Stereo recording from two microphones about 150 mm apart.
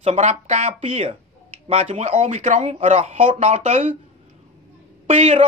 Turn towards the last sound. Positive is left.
turn(degrees=-45)  # may be behind; listen again after turning